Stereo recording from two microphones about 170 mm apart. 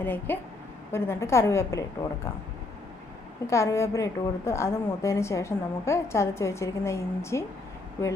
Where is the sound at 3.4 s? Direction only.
15° left (ahead or behind).